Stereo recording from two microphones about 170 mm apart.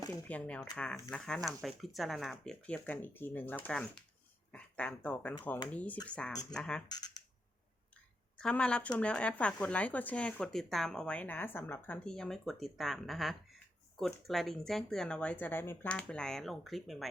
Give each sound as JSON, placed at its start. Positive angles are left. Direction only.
{"t": 0.1, "sound": "speech", "side_deg": 10}
{"t": 6.8, "sound": "speech", "side_deg": 25}
{"t": 8.4, "sound": "speech", "side_deg": 5}